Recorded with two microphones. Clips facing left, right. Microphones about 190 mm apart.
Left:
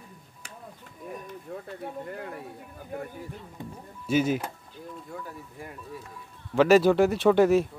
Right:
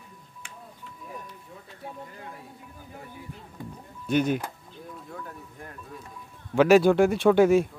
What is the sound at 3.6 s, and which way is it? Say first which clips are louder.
Music: right 1 dB; 25° left (ahead or behind).